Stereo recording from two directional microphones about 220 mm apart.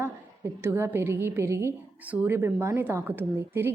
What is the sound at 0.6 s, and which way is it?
A woman's voice, 10° right (ahead or behind).